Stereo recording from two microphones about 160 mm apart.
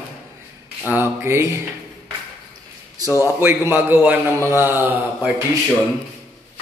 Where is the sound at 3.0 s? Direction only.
15° right (ahead or behind).